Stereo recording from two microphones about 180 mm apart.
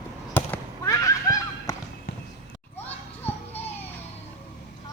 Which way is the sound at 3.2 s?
10° left (ahead or behind).